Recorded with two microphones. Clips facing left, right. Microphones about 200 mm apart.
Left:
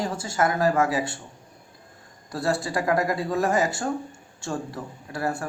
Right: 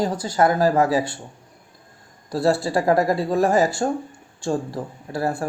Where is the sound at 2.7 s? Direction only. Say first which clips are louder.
Right 5 dB; 30° right (ahead or behind).